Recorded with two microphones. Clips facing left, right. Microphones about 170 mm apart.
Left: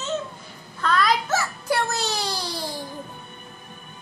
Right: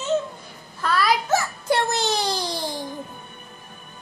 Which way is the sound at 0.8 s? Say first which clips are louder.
Even; 10° right (ahead or behind).